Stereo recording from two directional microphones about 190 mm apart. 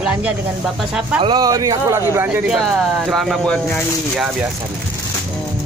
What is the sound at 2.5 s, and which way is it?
Speech, centre (ahead or behind).